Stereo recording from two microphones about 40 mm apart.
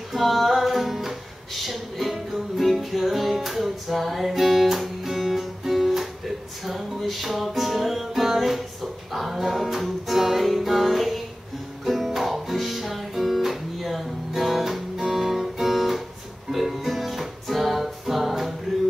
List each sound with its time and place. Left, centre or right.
0.1 s music: centre